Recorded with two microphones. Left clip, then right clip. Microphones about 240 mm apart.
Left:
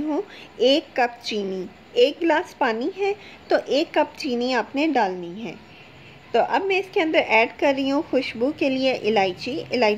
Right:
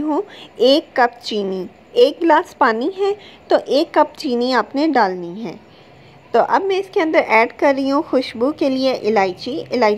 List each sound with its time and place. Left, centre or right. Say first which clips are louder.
0.1 s a woman's voice: right 6 dB; centre
6.3 s a woman's voice: right 5 dB; centre